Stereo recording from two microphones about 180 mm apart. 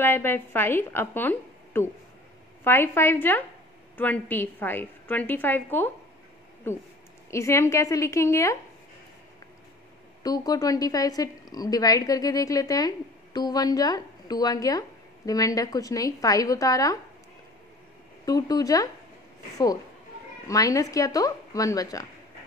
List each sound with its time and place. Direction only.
0.0 s a woman's voice: 10° left (ahead or behind)
10.2 s speech: 20° left (ahead or behind)
18.2 s speech: 20° left (ahead or behind)
20.4 s speech: 20° left (ahead or behind)